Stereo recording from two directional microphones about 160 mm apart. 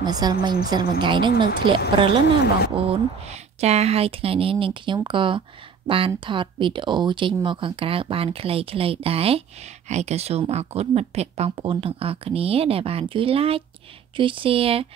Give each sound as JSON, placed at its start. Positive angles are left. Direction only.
{"t": 0.0, "sound": "a woman's voice", "side_deg": -25}
{"t": 2.2, "sound": "speech", "side_deg": 90}
{"t": 2.7, "sound": "speech", "side_deg": -35}